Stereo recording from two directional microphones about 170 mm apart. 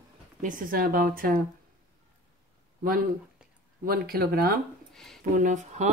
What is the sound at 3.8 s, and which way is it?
Speech, 60° right (ahead or behind).